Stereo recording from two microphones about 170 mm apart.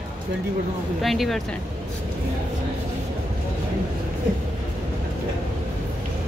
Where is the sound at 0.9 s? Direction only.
Centre (ahead or behind).